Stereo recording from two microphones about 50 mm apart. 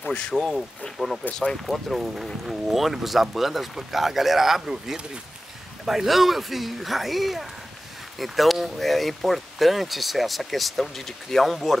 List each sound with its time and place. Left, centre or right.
0.0 s speech: centre
0.3 s speech: centre